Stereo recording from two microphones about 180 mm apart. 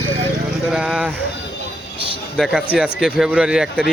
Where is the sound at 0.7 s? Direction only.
5° right (ahead or behind).